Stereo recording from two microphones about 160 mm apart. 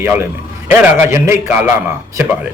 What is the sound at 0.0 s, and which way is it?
A man's voice, 15° right (ahead or behind).